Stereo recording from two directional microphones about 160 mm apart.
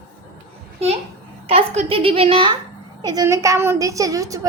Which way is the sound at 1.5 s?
35° right (ahead or behind).